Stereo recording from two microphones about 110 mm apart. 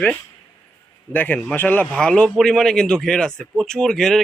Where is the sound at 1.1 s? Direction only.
15° left (ahead or behind).